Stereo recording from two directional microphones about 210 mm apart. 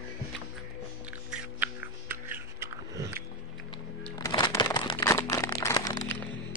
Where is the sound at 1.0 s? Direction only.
5° right (ahead or behind).